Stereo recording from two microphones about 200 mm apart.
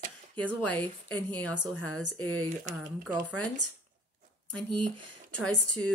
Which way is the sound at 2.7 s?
35° right (ahead or behind).